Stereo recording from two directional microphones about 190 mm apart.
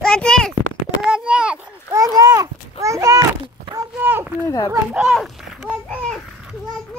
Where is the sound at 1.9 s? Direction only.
15° right (ahead or behind).